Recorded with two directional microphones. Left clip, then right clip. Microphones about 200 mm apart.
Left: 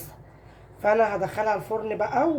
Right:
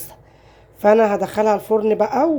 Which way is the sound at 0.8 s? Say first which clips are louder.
Right 7 dB; 45° right (ahead or behind).